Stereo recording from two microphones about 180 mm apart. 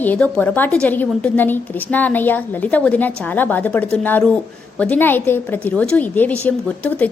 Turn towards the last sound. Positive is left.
turn(degrees=10)  # may be behind; listen again after turning